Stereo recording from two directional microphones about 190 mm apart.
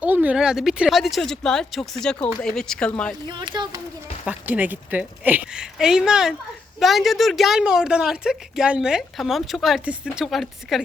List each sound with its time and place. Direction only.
0.0 s a woman's voice: 10° right (ahead or behind)
3.2 s speech: 25° right (ahead or behind)
4.3 s a woman's voice: 10° right (ahead or behind)